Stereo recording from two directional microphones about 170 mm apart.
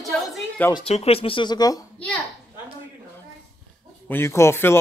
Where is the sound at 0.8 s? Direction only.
35° left (ahead or behind).